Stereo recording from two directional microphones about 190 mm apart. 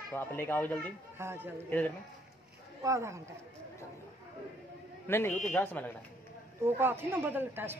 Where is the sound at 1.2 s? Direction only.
10° right (ahead or behind).